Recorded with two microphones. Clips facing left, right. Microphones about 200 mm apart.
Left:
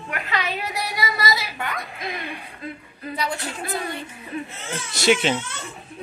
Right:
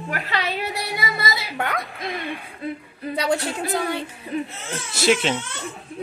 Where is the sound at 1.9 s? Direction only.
Centre (ahead or behind).